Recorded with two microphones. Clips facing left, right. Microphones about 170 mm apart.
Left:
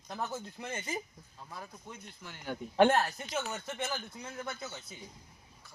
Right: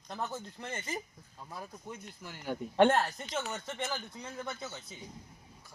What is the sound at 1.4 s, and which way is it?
Speech, 15° right (ahead or behind).